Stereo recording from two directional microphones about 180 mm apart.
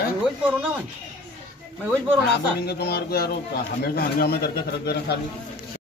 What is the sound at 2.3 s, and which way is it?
Speech, 65° left (ahead or behind).